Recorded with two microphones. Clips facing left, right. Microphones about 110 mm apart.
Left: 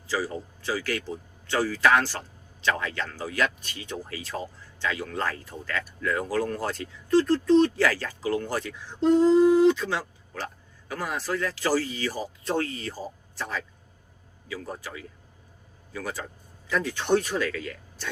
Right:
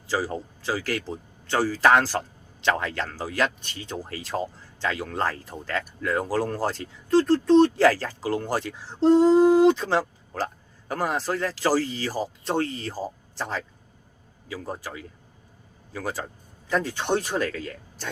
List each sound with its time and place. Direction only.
0.1 s speech: 40° right (ahead or behind)
7.8 s speech: 40° right (ahead or behind)
12.5 s speech: 30° right (ahead or behind)
12.9 s speech: 40° right (ahead or behind)
17.3 s speech: 40° right (ahead or behind)